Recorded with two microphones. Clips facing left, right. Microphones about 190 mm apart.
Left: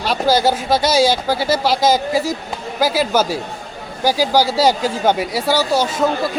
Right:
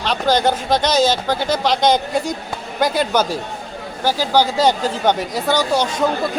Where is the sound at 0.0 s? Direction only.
10° left (ahead or behind).